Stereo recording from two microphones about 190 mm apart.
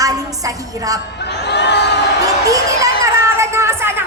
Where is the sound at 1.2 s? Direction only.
60° left (ahead or behind).